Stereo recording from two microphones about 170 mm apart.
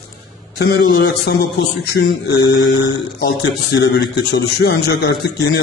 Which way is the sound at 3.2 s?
80° left.